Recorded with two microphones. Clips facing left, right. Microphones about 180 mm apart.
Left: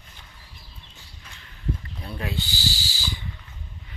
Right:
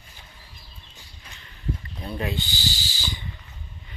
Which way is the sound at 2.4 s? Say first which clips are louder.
Even; 35° left (ahead or behind).